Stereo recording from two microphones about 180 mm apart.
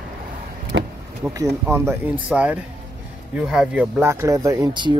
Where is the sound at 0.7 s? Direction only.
70° right (ahead or behind).